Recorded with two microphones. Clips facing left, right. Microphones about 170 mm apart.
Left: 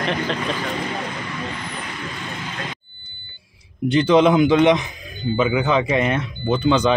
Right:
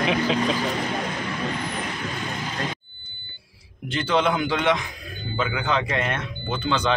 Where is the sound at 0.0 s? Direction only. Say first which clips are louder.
Right 1 dB; 5° right (ahead or behind).